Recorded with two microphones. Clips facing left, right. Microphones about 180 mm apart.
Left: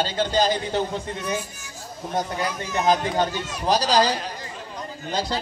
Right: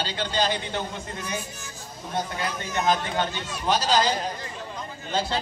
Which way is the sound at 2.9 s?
35° left (ahead or behind).